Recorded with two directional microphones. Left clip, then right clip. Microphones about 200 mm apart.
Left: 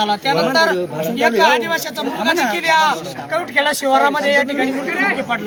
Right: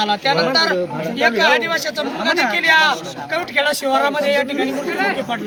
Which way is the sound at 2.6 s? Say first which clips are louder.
Right 1 dB; 5° right (ahead or behind).